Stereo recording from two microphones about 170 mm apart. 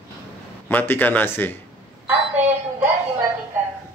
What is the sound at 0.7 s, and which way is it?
Speech, 10° left (ahead or behind).